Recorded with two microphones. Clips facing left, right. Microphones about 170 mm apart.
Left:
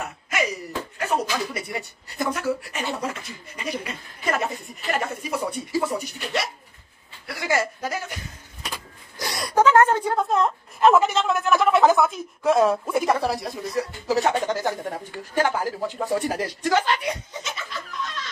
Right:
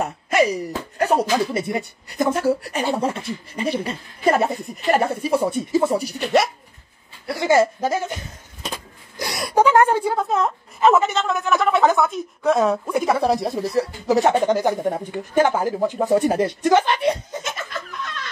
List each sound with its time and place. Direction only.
0.0 s speech: 35° right (ahead or behind)
5.9 s speech: 35° right (ahead or behind)
7.2 s speech: 25° right (ahead or behind)
9.3 s speech: 5° right (ahead or behind)
13.2 s speech: 20° right (ahead or behind)
13.6 s speech: 30° right (ahead or behind)
17.3 s chicken: 50° right (ahead or behind)